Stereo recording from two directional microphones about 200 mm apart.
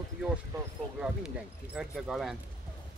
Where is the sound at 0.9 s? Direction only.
5° right (ahead or behind).